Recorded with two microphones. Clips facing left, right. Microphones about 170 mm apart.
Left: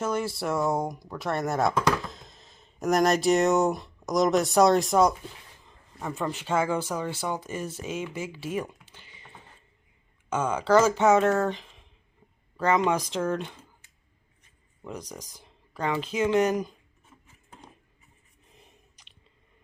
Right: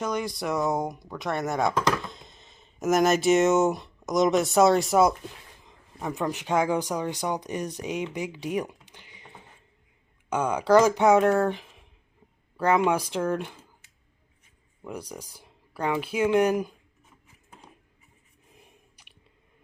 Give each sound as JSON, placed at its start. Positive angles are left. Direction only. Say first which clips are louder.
{"t": 0.0, "sound": "speech", "louder": "left 1 dB", "side_deg": 5}
{"t": 5.6, "sound": "speech", "louder": "right 2 dB", "side_deg": -15}
{"t": 14.8, "sound": "speech", "louder": "right 1 dB", "side_deg": -10}
{"t": 18.5, "sound": "chewing", "louder": "right 1 dB", "side_deg": -10}